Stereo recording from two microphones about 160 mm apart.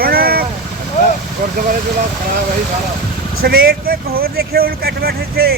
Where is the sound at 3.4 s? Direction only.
70° right (ahead or behind).